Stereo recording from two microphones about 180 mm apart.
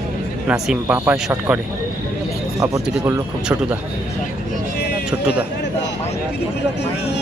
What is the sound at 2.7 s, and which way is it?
Speech, 15° right (ahead or behind).